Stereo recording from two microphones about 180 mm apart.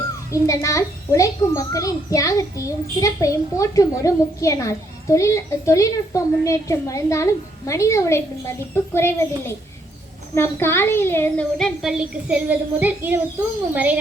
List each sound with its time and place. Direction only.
0.3 s a child's voice: 15° left (ahead or behind); by 14.0 s 10° right (ahead or behind)